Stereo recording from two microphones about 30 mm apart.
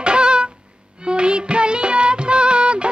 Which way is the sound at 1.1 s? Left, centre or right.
Right.